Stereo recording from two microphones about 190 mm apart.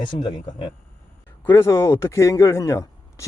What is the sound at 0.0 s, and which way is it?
Speech, 25° left (ahead or behind).